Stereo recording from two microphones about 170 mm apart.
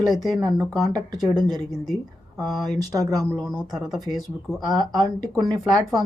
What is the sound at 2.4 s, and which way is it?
Speech, 20° right (ahead or behind).